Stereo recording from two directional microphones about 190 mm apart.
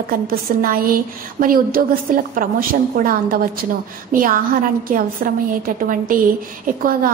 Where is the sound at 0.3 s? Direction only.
50° right (ahead or behind).